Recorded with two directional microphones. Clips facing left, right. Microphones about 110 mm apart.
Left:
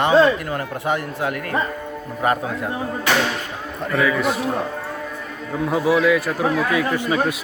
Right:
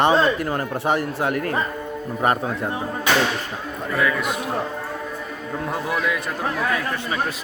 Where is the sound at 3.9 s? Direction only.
Centre (ahead or behind).